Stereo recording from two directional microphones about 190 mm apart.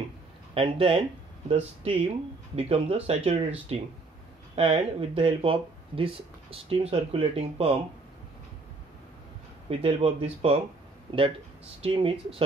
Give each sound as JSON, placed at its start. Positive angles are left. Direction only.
{"t": 0.6, "sound": "speech", "side_deg": -30}
{"t": 9.7, "sound": "speech", "side_deg": -30}
{"t": 11.8, "sound": "speech", "side_deg": -30}